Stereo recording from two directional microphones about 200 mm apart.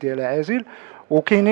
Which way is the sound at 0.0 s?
15° right (ahead or behind).